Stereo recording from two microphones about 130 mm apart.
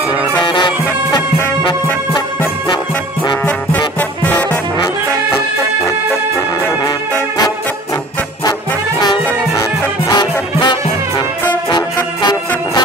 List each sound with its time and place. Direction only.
0.4 s bagpipes: 35° left (ahead or behind)
3.4 s music: 15° left (ahead or behind)
9.6 s music: 30° left (ahead or behind)